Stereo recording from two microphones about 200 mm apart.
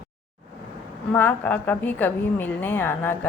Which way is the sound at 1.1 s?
10° left (ahead or behind).